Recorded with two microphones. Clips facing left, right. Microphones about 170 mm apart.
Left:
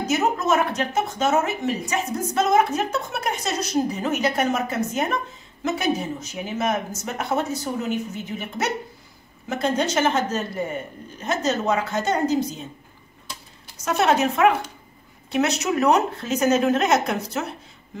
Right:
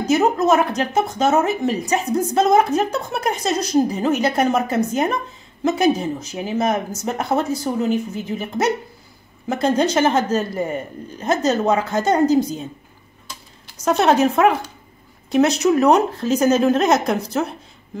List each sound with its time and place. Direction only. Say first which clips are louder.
0.1 s speech: right 6 dB; 35° right (ahead or behind)
13.8 s speech: right 4 dB; 35° right (ahead or behind)